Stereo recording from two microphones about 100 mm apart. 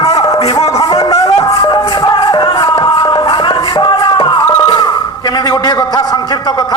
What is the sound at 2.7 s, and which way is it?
Music, 70° left (ahead or behind).